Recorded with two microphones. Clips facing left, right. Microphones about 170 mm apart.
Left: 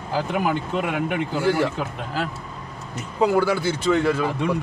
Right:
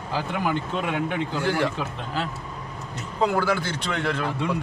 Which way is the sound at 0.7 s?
10° left (ahead or behind).